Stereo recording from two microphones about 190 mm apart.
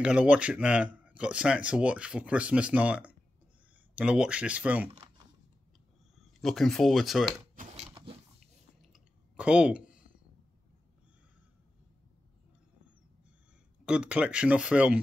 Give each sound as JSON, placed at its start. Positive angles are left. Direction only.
{"t": 0.0, "sound": "speech", "side_deg": -5}
{"t": 6.1, "sound": "speech", "side_deg": 0}
{"t": 7.9, "sound": "a sound", "side_deg": -30}
{"t": 8.8, "sound": "clicking", "side_deg": -5}
{"t": 13.8, "sound": "speech", "side_deg": -5}